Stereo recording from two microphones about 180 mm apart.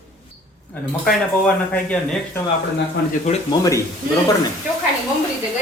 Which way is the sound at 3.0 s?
70° left (ahead or behind).